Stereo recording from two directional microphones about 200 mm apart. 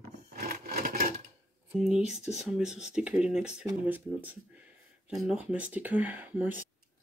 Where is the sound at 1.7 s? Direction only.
5° right (ahead or behind).